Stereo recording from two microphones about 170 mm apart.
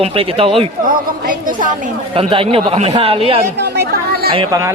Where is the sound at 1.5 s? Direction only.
50° right (ahead or behind).